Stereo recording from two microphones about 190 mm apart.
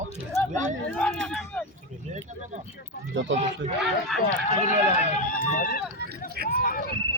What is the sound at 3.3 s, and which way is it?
Speech, 75° right (ahead or behind).